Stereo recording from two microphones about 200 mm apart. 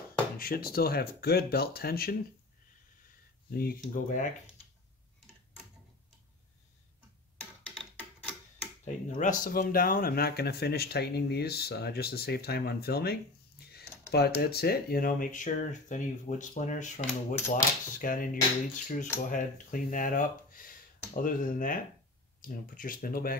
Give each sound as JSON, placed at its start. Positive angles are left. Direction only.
{"t": 0.4, "sound": "speech", "side_deg": 50}
{"t": 3.5, "sound": "speech", "side_deg": 45}
{"t": 8.8, "sound": "speech", "side_deg": 40}